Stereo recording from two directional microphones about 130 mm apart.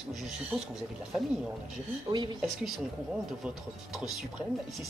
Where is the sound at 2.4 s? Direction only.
5° right (ahead or behind).